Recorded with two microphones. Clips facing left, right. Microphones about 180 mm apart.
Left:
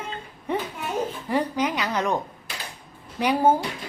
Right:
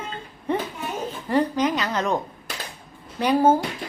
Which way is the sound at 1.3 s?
10° left (ahead or behind).